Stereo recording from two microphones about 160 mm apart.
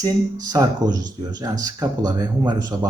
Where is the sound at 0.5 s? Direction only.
25° right (ahead or behind).